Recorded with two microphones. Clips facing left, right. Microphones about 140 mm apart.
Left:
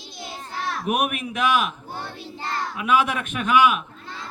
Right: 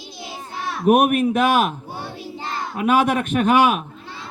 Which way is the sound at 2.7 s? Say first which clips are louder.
Right 5 dB; 45° right (ahead or behind).